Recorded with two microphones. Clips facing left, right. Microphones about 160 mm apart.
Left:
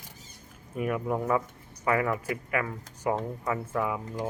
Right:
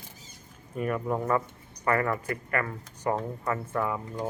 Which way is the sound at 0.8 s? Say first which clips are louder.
Even; 5° left (ahead or behind).